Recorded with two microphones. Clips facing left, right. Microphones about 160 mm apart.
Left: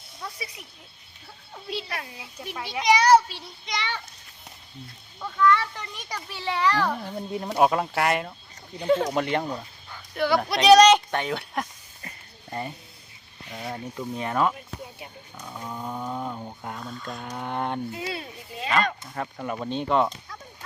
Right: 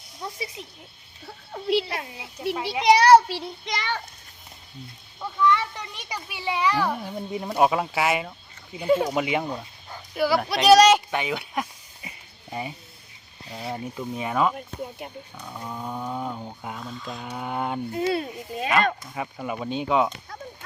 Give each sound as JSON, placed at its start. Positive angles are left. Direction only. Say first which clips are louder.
{"t": 0.2, "sound": "a child's voice", "louder": "right 4 dB", "side_deg": -25}
{"t": 1.3, "sound": "child singing", "louder": "right 11 dB", "side_deg": -60}
{"t": 1.9, "sound": "a child's voice", "louder": "right 3 dB", "side_deg": -25}
{"t": 3.1, "sound": "child singing", "louder": "right 3 dB", "side_deg": -65}
{"t": 5.2, "sound": "a child's voice", "louder": "left 1 dB", "side_deg": -15}
{"t": 13.9, "sound": "speech", "louder": "even", "side_deg": -5}
{"t": 14.5, "sound": "speech", "louder": "right 5 dB", "side_deg": -55}
{"t": 15.4, "sound": "speech", "louder": "even", "side_deg": -5}
{"t": 17.9, "sound": "speech", "louder": "right 8 dB", "side_deg": -45}
{"t": 19.1, "sound": "speech", "louder": "even", "side_deg": -5}